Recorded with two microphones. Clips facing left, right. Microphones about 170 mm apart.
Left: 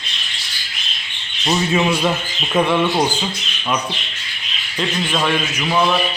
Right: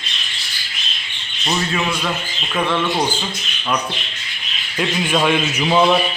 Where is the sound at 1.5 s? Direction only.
25° left (ahead or behind).